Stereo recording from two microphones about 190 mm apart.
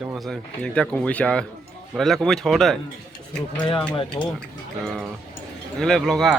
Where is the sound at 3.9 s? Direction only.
25° left (ahead or behind).